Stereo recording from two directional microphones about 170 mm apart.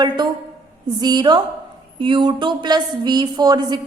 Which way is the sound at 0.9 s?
25° right (ahead or behind).